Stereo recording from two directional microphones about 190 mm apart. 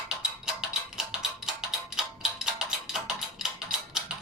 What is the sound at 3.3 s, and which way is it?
Tick-tock, 5° right (ahead or behind).